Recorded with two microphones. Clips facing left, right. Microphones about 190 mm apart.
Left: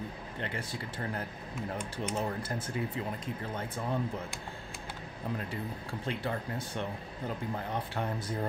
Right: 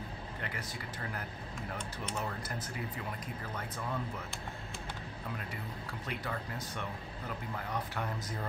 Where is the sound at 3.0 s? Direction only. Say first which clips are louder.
Left 5 dB; 25° left (ahead or behind).